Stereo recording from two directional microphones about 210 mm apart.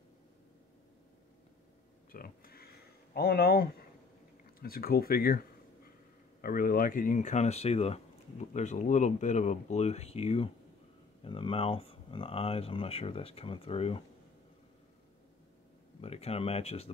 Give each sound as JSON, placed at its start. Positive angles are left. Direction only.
{"t": 2.1, "sound": "a sound", "side_deg": 45}
{"t": 3.2, "sound": "speech", "side_deg": 50}
{"t": 6.4, "sound": "speech", "side_deg": 45}
{"t": 16.0, "sound": "speech", "side_deg": 30}